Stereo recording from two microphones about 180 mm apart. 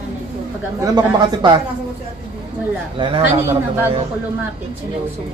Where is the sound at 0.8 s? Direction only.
25° right (ahead or behind).